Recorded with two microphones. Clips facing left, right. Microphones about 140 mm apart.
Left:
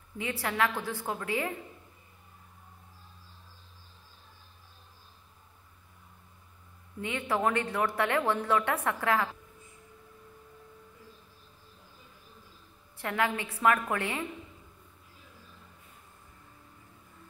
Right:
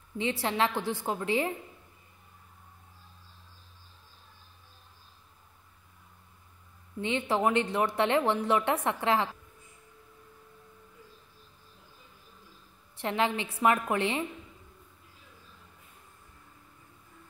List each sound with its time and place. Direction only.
0.2 s a woman's voice: 25° right (ahead or behind)
7.0 s a woman's voice: 25° right (ahead or behind)
13.0 s a woman's voice: 25° right (ahead or behind)